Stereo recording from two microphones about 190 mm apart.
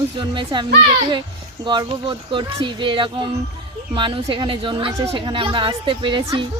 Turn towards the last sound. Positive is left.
turn(degrees=-25)  # may be behind; listen again after turning